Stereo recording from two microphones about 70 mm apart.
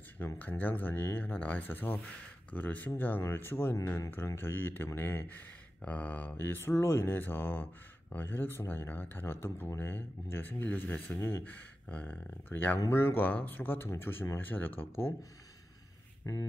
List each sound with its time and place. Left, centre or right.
0.4 s speech: left
13.2 s speech: left
16.3 s speech: left